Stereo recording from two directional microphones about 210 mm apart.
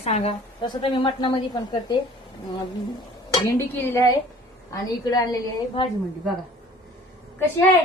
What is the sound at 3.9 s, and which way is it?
A woman's voice, 15° left (ahead or behind).